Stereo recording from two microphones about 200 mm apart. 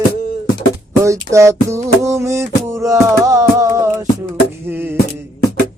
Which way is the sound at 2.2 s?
15° right (ahead or behind).